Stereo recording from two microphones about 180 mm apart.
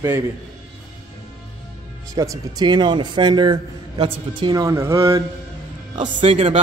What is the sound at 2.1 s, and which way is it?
A man's voice, 20° right (ahead or behind).